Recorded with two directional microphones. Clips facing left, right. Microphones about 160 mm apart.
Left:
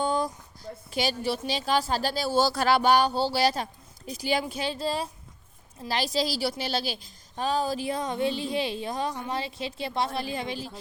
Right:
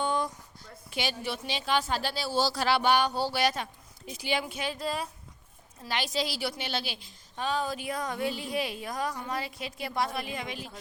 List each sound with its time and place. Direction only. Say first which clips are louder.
0.0 s a woman's voice: left 3 dB; 35° left (ahead or behind)